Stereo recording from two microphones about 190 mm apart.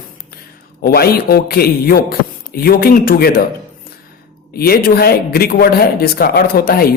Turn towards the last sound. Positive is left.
turn(degrees=50)  # may be behind; listen again after turning